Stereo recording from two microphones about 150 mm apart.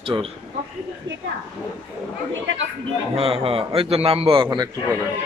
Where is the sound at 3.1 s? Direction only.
40° right (ahead or behind).